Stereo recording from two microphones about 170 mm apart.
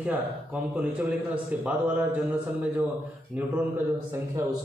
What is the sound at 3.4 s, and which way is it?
Speech, 10° right (ahead or behind).